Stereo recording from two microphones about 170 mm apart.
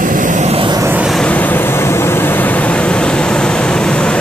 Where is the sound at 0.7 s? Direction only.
15° right (ahead or behind).